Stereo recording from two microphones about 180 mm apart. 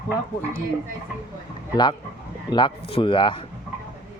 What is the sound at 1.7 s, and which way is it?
Speech, 25° left (ahead or behind).